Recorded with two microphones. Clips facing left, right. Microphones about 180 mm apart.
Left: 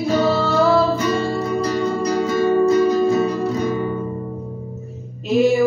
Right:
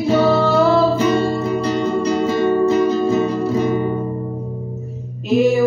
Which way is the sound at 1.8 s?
25° right (ahead or behind).